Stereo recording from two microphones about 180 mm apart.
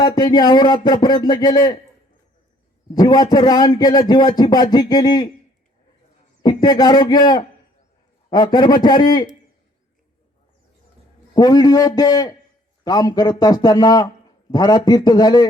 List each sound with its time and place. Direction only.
0.0 s a man's voice: 25° left (ahead or behind)
2.9 s a man's voice: 20° left (ahead or behind)
6.4 s a man's voice: 25° left (ahead or behind)
11.3 s a man's voice: 20° left (ahead or behind)